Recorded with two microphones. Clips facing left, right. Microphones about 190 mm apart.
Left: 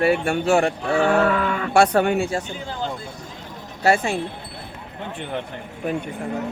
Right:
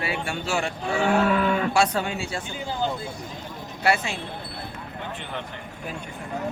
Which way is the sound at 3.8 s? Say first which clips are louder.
Left 5 dB; 40° left (ahead or behind).